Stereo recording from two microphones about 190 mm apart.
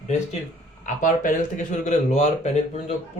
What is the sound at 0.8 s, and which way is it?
A man's voice, 45° left (ahead or behind).